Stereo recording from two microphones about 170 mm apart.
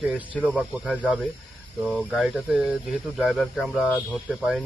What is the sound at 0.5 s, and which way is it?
Speech, 5° right (ahead or behind).